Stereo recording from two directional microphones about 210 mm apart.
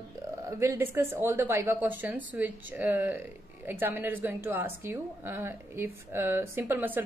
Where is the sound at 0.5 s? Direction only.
15° right (ahead or behind).